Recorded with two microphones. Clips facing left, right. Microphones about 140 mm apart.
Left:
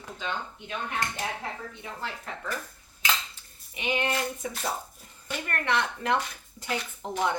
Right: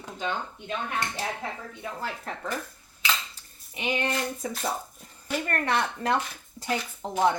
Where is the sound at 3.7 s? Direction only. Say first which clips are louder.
Even; 35° right (ahead or behind).